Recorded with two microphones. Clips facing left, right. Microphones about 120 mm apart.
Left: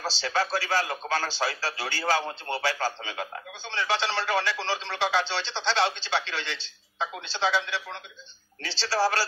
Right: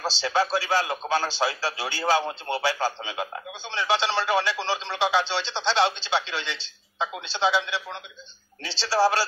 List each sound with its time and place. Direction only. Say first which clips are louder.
0.0 s speech: right 3 dB; 15° right (ahead or behind)